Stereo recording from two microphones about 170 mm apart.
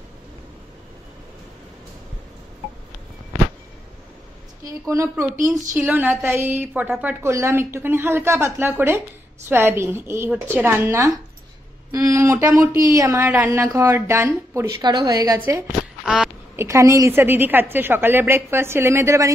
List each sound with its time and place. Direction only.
4.8 s speech: 15° right (ahead or behind)
5.3 s speech: 50° right (ahead or behind)
5.8 s speech: 10° right (ahead or behind)
15.3 s speech: 10° right (ahead or behind)